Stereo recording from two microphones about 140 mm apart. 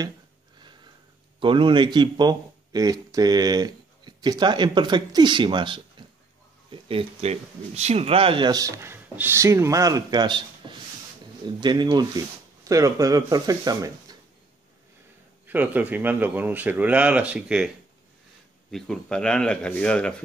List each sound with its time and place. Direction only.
1.4 s speech: 35° right (ahead or behind)
6.0 s a sound: 35° right (ahead or behind)
6.7 s speech: 40° right (ahead or behind)
10.6 s a sound: 35° right (ahead or behind)
11.4 s speech: 30° right (ahead or behind)
15.4 s speech: 10° right (ahead or behind)
18.7 s speech: 5° left (ahead or behind)